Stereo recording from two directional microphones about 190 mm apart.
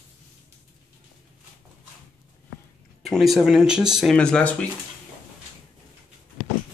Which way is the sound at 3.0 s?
Centre (ahead or behind).